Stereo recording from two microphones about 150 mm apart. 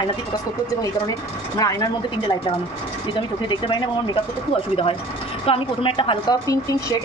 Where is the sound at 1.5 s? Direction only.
25° left (ahead or behind).